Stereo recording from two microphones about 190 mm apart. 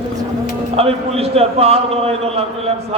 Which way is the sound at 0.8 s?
30° right (ahead or behind).